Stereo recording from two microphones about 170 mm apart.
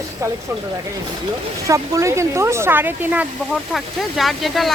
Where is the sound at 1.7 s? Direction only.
20° right (ahead or behind); by 4.7 s centre (ahead or behind).